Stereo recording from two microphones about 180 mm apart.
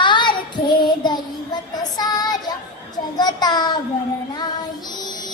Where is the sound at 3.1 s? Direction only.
20° left (ahead or behind).